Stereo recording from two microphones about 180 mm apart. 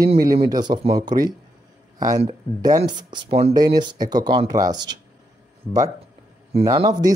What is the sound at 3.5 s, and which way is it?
Speech, 25° right (ahead or behind).